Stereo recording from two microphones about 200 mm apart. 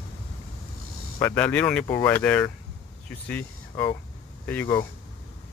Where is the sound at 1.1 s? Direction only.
10° left (ahead or behind).